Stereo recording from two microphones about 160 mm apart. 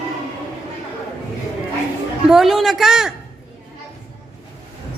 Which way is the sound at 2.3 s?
Centre (ahead or behind).